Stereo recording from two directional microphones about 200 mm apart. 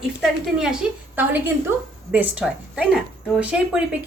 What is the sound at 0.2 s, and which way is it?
Speech, 5° right (ahead or behind).